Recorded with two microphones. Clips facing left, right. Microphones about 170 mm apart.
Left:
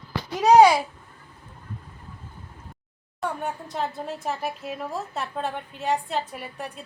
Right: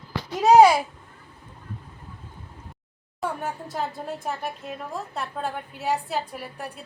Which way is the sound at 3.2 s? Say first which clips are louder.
Even; centre (ahead or behind).